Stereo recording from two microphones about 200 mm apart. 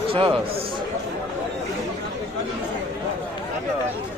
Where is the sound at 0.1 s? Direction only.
25° right (ahead or behind).